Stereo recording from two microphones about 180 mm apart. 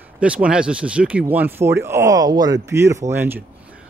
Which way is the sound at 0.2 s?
5° right (ahead or behind).